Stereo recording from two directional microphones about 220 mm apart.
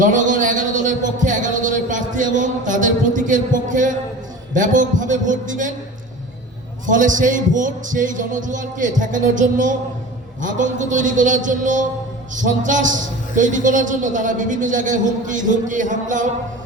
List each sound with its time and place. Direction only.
0.0 s a sound: 35° right (ahead or behind)
4.5 s a woman's voice: 35° right (ahead or behind)
6.8 s a woman's voice: 35° right (ahead or behind)